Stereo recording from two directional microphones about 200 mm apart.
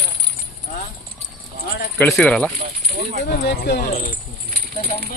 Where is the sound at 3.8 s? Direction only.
40° left (ahead or behind).